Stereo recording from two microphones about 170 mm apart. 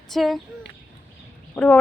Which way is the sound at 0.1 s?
Centre (ahead or behind).